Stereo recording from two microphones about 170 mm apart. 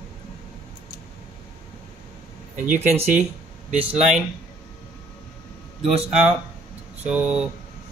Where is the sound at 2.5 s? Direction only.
45° right (ahead or behind).